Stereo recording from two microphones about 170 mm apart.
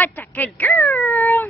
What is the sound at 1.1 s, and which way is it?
Cat, 15° left (ahead or behind).